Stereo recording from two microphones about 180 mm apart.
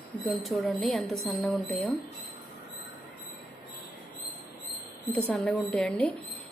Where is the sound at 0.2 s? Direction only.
Centre (ahead or behind).